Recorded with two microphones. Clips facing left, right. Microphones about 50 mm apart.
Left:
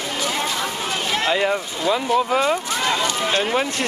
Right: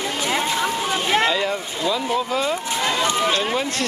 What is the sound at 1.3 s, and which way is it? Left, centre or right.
Speech, left.